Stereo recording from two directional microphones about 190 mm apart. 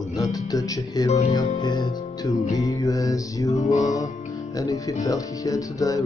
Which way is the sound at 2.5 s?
15° left (ahead or behind).